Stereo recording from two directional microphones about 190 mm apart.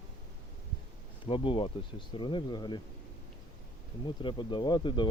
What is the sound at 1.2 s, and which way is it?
Speech, 25° left (ahead or behind).